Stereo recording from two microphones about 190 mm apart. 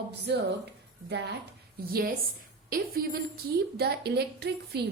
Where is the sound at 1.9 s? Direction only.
50° right (ahead or behind).